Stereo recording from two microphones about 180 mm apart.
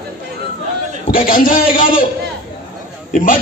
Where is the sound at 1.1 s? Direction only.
50° left (ahead or behind).